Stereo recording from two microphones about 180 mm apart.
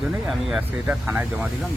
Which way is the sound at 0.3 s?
5° right (ahead or behind).